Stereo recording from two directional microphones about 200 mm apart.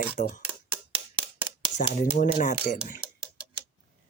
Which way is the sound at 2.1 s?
40° left (ahead or behind).